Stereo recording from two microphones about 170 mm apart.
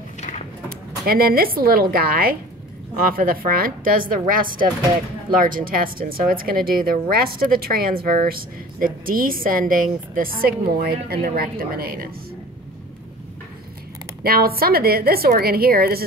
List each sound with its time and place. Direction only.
0.7 s speech: 60° right (ahead or behind)
14.2 s speech: 60° right (ahead or behind)